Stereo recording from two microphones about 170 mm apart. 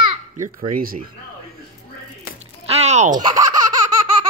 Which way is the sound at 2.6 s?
40° right (ahead or behind).